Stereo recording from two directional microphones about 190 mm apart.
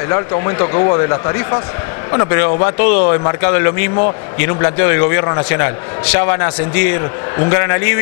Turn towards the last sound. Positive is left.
turn(degrees=20)  # may be behind; listen again after turning